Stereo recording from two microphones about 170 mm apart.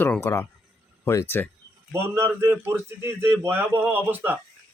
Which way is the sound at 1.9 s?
15° right (ahead or behind).